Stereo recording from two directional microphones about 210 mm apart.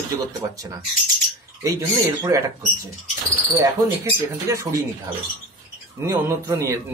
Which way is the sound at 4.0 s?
15° right (ahead or behind).